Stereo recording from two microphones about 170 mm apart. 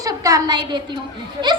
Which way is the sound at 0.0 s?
20° right (ahead or behind).